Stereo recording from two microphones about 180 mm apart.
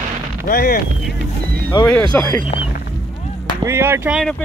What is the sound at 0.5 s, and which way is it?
Speech, 60° left (ahead or behind).